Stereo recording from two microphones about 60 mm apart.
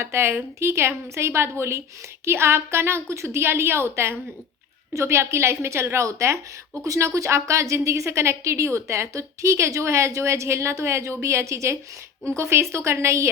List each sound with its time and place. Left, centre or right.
0.0 s a woman's voice: right